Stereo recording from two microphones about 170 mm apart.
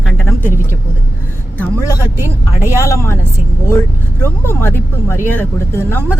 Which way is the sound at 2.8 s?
15° left (ahead or behind).